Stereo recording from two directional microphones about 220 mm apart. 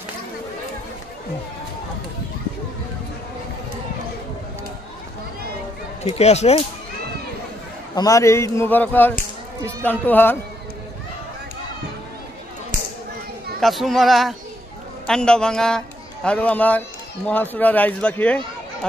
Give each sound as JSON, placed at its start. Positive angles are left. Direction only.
{"t": 6.0, "sound": "speech", "side_deg": 30}
{"t": 7.9, "sound": "speech", "side_deg": 15}
{"t": 13.6, "sound": "speech", "side_deg": 0}